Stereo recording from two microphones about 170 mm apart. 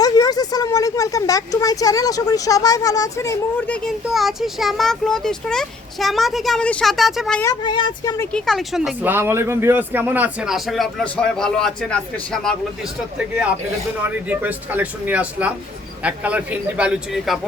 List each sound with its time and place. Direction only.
0.0 s speech: 20° left (ahead or behind); by 7.4 s centre (ahead or behind)
7.4 s speech: 25° left (ahead or behind)
8.2 s speech: 5° left (ahead or behind)